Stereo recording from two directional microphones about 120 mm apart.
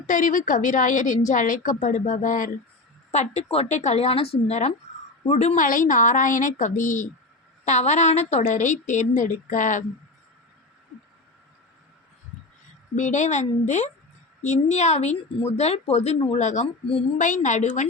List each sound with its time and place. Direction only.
0.1 s a woman's voice: 90° left
3.1 s a woman's voice: 65° left (ahead or behind); by 7.1 s 90° left
7.6 s a woman's voice: 70° left (ahead or behind); by 9.8 s 90° left
13.0 s a woman's voice: 90° left; by 16.1 s 60° left (ahead or behind)
16.3 s a woman's voice: 85° left